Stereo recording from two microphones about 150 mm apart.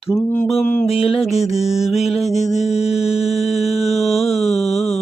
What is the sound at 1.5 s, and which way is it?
Speech, 45° left (ahead or behind).